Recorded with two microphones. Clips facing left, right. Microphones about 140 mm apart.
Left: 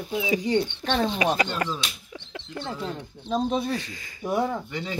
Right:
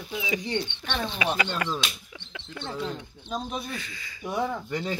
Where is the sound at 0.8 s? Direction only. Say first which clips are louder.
Left 6 dB; 40° left (ahead or behind).